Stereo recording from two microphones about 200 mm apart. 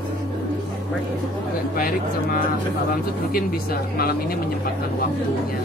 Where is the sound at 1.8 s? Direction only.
45° left (ahead or behind).